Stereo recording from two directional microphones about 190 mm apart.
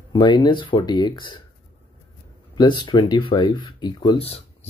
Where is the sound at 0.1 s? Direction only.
25° left (ahead or behind).